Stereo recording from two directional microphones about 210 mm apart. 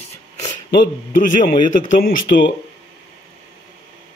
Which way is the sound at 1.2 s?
40° left (ahead or behind).